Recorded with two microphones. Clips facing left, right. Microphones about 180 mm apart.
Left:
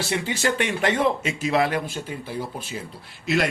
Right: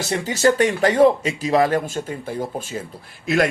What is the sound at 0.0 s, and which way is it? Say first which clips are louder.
Speech: right 6 dB; 40° right (ahead or behind).